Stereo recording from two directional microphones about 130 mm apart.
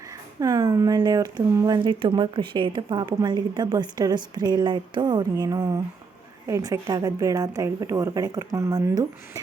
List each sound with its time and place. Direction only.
0.3 s a woman's voice: 30° right (ahead or behind)